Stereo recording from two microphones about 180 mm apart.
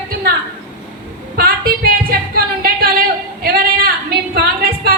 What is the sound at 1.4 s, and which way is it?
Music, 55° right (ahead or behind).